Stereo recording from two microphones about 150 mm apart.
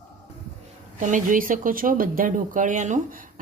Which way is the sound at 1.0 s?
60° right (ahead or behind).